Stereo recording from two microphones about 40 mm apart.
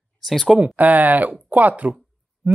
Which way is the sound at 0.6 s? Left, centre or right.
Right.